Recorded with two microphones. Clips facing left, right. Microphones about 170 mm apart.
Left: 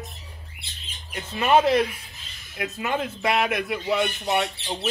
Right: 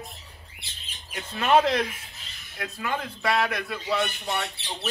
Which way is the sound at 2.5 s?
20° left (ahead or behind).